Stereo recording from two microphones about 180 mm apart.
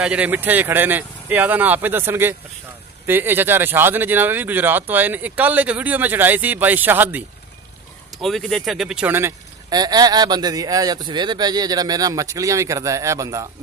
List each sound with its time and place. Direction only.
0.0 s speech: 5° right (ahead or behind)
8.2 s speech: centre (ahead or behind); by 13.5 s 20° right (ahead or behind)